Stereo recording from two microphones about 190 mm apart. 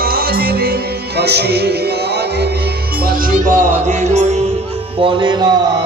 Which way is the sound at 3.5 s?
40° right (ahead or behind).